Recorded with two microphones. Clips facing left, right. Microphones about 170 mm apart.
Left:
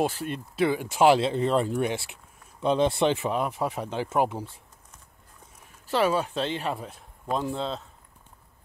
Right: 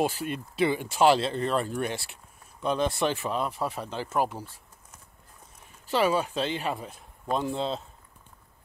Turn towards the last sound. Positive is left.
turn(degrees=-5)  # may be behind; listen again after turning